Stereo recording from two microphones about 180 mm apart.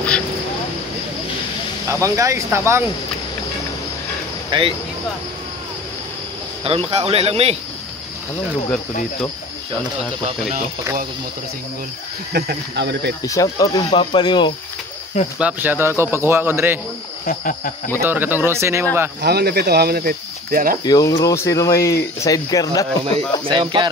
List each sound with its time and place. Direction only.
1.9 s speech: 15° right (ahead or behind)
4.5 s speech: 30° right (ahead or behind)
6.6 s speech: 30° right (ahead or behind)
12.3 s speech: 60° right (ahead or behind)
13.2 s speech: 20° left (ahead or behind)
15.3 s speech: 10° right (ahead or behind)
17.3 s cricket: 50° left (ahead or behind)
18.0 s speech: 10° right (ahead or behind)
19.2 s speech: 65° right (ahead or behind)
20.8 s speech: 20° left (ahead or behind)
23.4 s speech: 25° right (ahead or behind)